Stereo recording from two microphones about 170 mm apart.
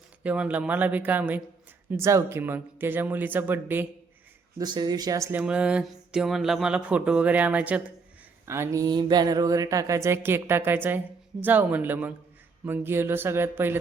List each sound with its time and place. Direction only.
0.2 s speech: 10° right (ahead or behind)
4.5 s speech: 25° right (ahead or behind)
5.4 s speech: 5° right (ahead or behind)